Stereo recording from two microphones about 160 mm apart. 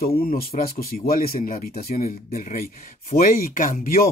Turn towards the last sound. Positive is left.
turn(degrees=65)  # may be behind; listen again after turning